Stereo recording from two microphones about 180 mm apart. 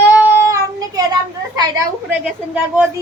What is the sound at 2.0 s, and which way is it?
Child singing, 10° right (ahead or behind).